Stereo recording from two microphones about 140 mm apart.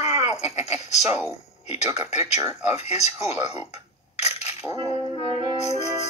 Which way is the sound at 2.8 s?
50° left (ahead or behind).